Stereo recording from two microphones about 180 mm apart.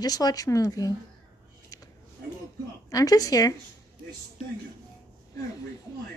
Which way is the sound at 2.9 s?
20° left (ahead or behind).